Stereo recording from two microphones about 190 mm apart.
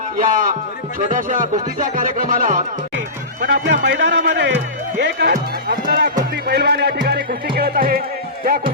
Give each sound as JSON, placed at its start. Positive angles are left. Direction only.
{"t": 0.2, "sound": "speech", "side_deg": -45}
{"t": 3.4, "sound": "speech", "side_deg": -70}
{"t": 6.3, "sound": "music", "side_deg": -60}